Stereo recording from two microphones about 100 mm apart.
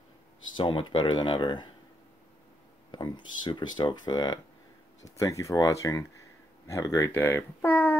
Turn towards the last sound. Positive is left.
turn(degrees=25)  # may be behind; listen again after turning